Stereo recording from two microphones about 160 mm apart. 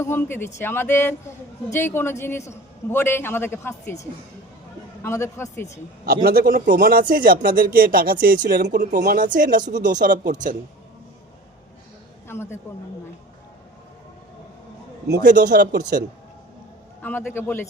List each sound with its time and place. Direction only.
0.0 s a man's voice: 15° left (ahead or behind)
5.0 s a man's voice: 15° left (ahead or behind)
6.2 s speech: 65° right (ahead or behind)
12.3 s a man's voice: 15° left (ahead or behind)
15.0 s speech: 90° right
17.0 s a man's voice: 10° left (ahead or behind)